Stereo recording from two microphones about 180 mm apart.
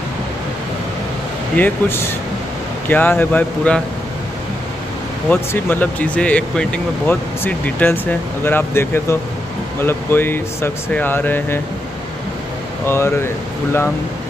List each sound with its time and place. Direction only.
1.6 s speech: 15° left (ahead or behind)
5.3 s speech: 10° left (ahead or behind)
12.8 s speech: 15° left (ahead or behind)